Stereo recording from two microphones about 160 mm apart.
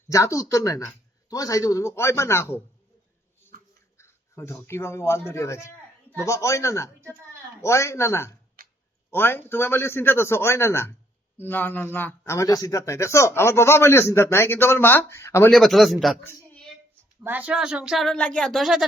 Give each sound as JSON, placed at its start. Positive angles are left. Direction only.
{"t": 0.1, "sound": "speech", "side_deg": 20}
{"t": 3.9, "sound": "a man's voice", "side_deg": 15}
{"t": 8.6, "sound": "a sound", "side_deg": -65}
{"t": 9.0, "sound": "a man's voice", "side_deg": 15}
{"t": 15.5, "sound": "speech", "side_deg": 0}
{"t": 17.2, "sound": "speech", "side_deg": -10}